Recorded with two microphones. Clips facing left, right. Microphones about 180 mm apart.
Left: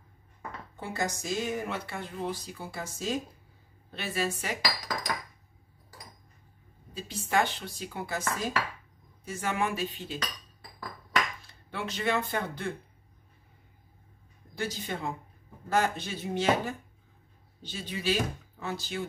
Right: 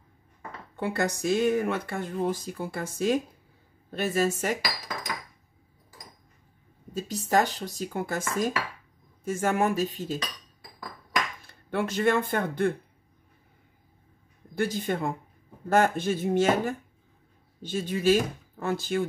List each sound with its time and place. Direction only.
0.7 s speech: 65° right (ahead or behind)
3.9 s speech: 45° right (ahead or behind)
6.9 s speech: 45° right (ahead or behind)
11.4 s speech: 50° right (ahead or behind)
14.5 s speech: 55° right (ahead or behind)